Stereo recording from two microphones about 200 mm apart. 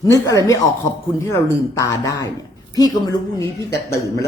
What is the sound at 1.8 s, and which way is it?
A woman's voice, 15° left (ahead or behind).